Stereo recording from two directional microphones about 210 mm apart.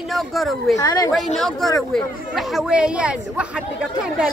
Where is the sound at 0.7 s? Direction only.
15° left (ahead or behind).